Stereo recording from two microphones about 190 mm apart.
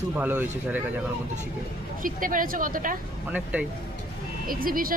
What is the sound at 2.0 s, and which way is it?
Speech, 45° right (ahead or behind).